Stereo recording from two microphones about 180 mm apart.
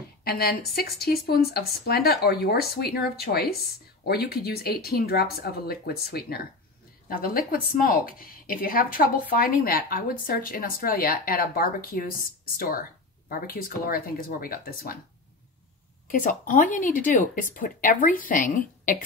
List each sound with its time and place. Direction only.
0.2 s speech: 60° left (ahead or behind)
16.1 s speech: 50° left (ahead or behind)